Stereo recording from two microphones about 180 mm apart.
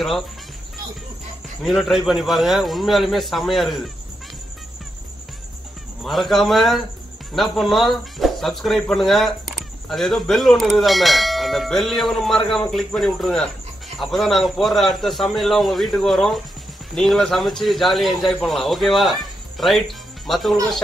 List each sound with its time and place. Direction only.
1.6 s speech: centre (ahead or behind)
6.0 s speech: centre (ahead or behind)